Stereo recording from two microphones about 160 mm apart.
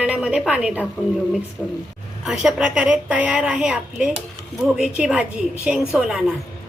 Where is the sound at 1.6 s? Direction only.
10° left (ahead or behind).